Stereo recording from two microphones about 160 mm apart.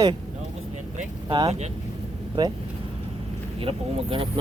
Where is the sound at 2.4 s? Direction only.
25° right (ahead or behind).